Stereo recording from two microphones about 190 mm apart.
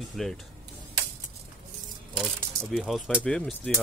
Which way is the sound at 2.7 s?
Centre (ahead or behind).